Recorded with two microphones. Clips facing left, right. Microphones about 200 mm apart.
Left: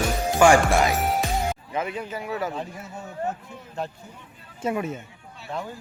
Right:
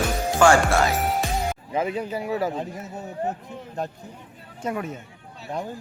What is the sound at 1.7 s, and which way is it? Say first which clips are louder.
A man's voice: right 4 dB; 35° right (ahead or behind).